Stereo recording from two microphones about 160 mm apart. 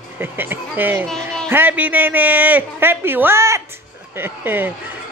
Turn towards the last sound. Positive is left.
turn(degrees=-10)  # may be behind; listen again after turning